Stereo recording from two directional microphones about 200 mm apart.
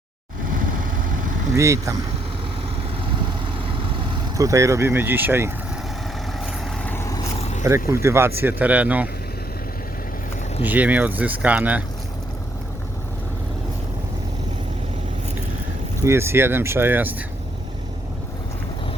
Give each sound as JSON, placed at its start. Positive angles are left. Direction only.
{"t": 1.5, "sound": "speech", "side_deg": -15}
{"t": 4.4, "sound": "speech", "side_deg": -15}
{"t": 6.4, "sound": "vehicle", "side_deg": 0}
{"t": 6.9, "sound": "vehicle", "side_deg": 15}
{"t": 7.3, "sound": "a sound", "side_deg": 30}
{"t": 7.9, "sound": "speech", "side_deg": -15}
{"t": 10.6, "sound": "speech", "side_deg": -10}
{"t": 16.0, "sound": "speech", "side_deg": -15}